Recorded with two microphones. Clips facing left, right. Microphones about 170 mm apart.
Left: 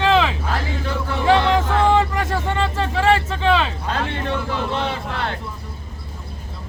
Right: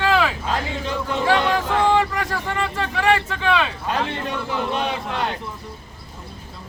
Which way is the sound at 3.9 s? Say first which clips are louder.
Left 1 dB; 15° right (ahead or behind).